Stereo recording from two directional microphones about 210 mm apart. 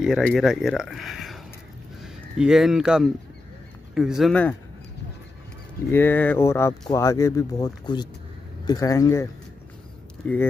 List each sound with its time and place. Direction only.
0.0 s speech: centre (ahead or behind)
5.9 s speech: 10° left (ahead or behind)